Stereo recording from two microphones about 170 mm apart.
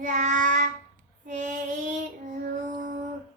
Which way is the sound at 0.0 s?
50° right (ahead or behind).